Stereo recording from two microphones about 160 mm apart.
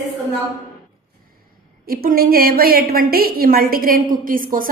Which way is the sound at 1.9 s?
65° right (ahead or behind).